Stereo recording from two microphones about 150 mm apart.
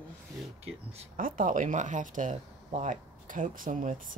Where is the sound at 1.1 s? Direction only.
65° right (ahead or behind).